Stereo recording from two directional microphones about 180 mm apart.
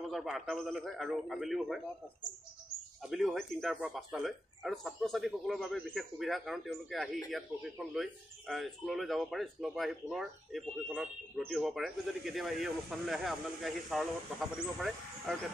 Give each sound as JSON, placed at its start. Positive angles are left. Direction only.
{"t": 0.1, "sound": "speech", "side_deg": 0}
{"t": 3.0, "sound": "speech", "side_deg": 0}